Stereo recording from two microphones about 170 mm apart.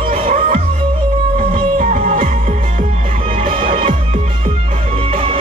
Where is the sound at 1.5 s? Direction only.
50° right (ahead or behind).